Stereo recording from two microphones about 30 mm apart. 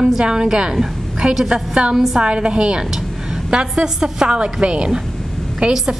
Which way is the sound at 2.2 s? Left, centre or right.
Right.